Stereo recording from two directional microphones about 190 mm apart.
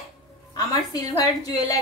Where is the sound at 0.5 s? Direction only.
20° left (ahead or behind).